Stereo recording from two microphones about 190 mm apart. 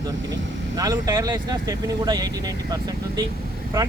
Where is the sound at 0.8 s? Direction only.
15° right (ahead or behind).